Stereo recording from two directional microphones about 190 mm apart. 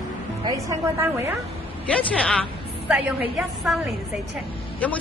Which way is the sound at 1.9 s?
5° left (ahead or behind).